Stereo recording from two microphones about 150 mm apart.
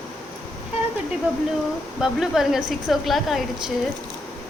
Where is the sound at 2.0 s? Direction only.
Centre (ahead or behind).